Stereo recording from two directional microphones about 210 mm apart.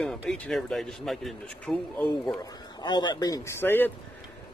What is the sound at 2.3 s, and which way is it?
Speech, 20° left (ahead or behind).